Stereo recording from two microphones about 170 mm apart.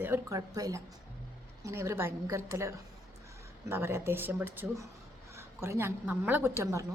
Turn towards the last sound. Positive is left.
turn(degrees=-15)  # may be behind; listen again after turning